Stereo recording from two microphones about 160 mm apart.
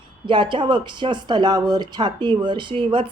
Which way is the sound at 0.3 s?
30° right (ahead or behind).